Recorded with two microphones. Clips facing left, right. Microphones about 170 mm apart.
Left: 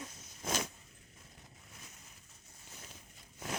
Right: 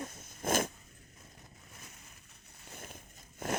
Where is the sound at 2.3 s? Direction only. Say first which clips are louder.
Right 4 dB; 65° right (ahead or behind); by 3.5 s 50° right (ahead or behind).